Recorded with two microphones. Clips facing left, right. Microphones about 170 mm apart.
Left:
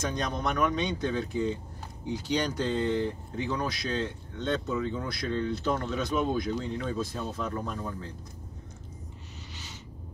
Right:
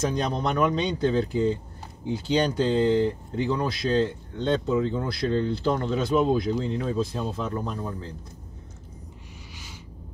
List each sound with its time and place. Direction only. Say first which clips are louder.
0.2 s speech: right 2 dB; 30° right (ahead or behind)